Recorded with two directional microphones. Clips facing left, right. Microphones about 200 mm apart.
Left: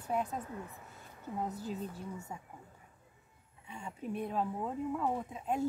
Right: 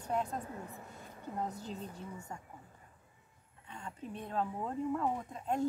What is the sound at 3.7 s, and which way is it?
Speech, 10° left (ahead or behind).